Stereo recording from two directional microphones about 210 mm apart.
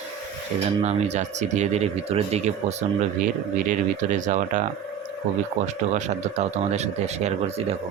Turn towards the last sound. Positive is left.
turn(degrees=-30)  # may be behind; listen again after turning